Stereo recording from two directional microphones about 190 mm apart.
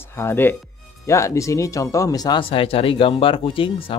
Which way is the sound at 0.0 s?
10° left (ahead or behind).